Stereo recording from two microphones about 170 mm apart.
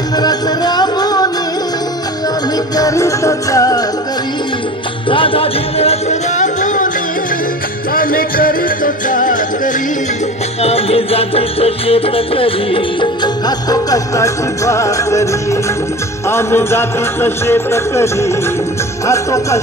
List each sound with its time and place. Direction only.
0.2 s music: 25° left (ahead or behind)
2.7 s music: 20° left (ahead or behind)
5.1 s music: 30° left (ahead or behind); by 6.9 s 50° left (ahead or behind)
7.9 s music: 60° left (ahead or behind)
10.6 s music: 35° left (ahead or behind); by 19.6 s 20° left (ahead or behind)